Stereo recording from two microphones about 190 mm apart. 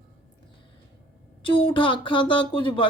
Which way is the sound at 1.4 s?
25° left (ahead or behind).